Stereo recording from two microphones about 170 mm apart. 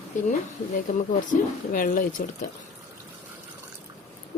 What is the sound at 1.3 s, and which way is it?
Speech, 55° left (ahead or behind).